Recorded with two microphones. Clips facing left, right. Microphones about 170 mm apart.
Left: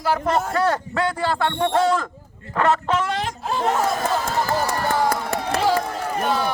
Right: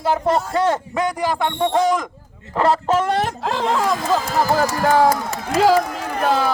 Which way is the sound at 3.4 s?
90° right.